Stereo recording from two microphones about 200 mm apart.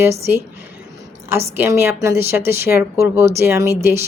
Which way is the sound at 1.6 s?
10° right (ahead or behind).